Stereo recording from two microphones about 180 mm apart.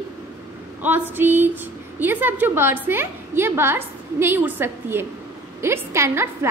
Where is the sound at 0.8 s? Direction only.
10° right (ahead or behind).